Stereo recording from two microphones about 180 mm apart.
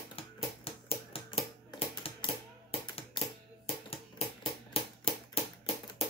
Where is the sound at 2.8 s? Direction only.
25° left (ahead or behind).